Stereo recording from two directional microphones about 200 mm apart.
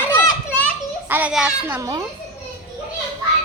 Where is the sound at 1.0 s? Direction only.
10° right (ahead or behind).